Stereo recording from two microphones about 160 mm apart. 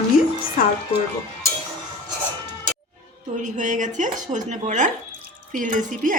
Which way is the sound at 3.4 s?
50° right (ahead or behind).